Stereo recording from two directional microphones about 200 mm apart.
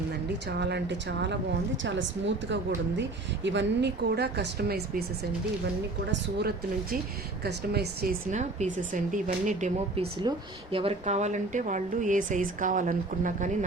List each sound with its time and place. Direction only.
0.5 s speech: 55° right (ahead or behind)
3.0 s speech: 60° right (ahead or behind)
7.4 s speech: 55° right (ahead or behind)
8.3 s speech: 35° right (ahead or behind)